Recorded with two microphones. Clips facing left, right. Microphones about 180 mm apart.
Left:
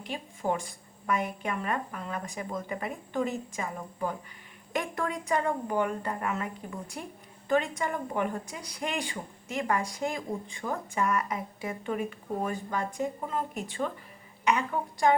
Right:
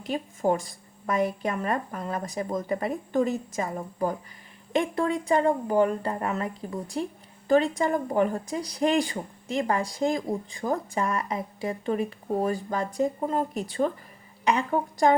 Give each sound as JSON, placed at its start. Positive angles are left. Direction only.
{"t": 0.1, "sound": "speech", "side_deg": -40}
{"t": 4.7, "sound": "speech", "side_deg": -25}